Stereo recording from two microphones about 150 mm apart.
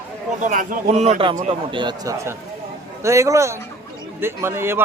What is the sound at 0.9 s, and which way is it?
A man's voice, 45° right (ahead or behind).